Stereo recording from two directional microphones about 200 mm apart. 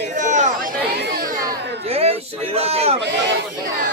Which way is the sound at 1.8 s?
30° right (ahead or behind).